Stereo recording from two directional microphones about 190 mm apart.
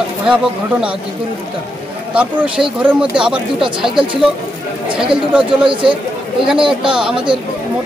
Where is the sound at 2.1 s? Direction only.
5° right (ahead or behind).